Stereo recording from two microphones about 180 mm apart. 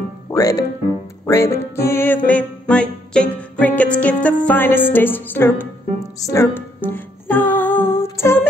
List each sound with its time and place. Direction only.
0.3 s speech: 20° left (ahead or behind)
1.2 s music: 15° left (ahead or behind)
4.5 s speech: 10° left (ahead or behind)
6.2 s music: 15° left (ahead or behind)